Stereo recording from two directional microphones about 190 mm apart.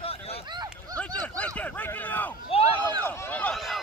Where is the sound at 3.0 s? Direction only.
10° left (ahead or behind).